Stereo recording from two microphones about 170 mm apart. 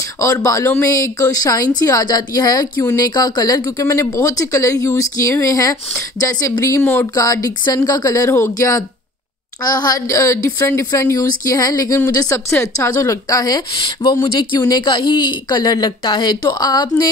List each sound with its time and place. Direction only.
0.2 s speech: 20° left (ahead or behind)